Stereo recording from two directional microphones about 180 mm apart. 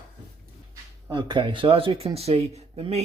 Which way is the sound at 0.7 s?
20° right (ahead or behind).